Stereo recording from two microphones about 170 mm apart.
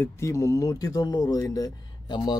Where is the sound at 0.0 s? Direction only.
15° left (ahead or behind).